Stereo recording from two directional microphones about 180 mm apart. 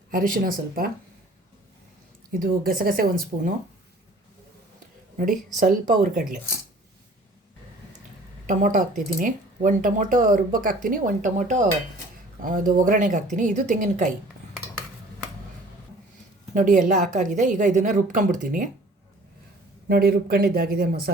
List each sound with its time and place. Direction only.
0.1 s speech: 50° right (ahead or behind)
2.4 s speech: 55° right (ahead or behind)
5.1 s speech: 45° right (ahead or behind)
8.4 s speech: 45° right (ahead or behind)
16.6 s speech: 45° right (ahead or behind)
19.9 s speech: 55° right (ahead or behind)